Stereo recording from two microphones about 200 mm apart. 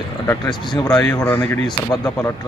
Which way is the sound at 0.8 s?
15° left (ahead or behind).